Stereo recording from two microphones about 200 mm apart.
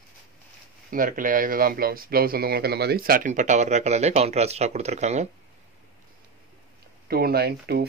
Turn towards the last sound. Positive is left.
turn(degrees=-50)  # may be behind; listen again after turning